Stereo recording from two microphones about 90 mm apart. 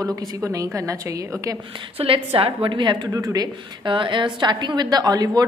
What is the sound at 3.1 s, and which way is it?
Speech, 40° right (ahead or behind).